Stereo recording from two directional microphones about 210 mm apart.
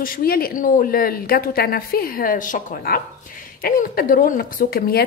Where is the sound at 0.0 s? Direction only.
45° left (ahead or behind).